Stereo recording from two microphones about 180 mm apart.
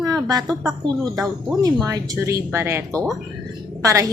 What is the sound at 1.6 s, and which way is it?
A woman's voice, 20° right (ahead or behind).